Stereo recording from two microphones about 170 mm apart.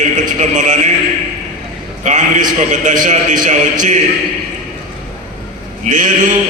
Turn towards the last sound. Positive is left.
turn(degrees=-50)  # may be behind; listen again after turning